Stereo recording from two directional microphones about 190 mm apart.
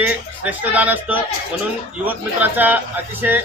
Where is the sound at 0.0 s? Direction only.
10° right (ahead or behind).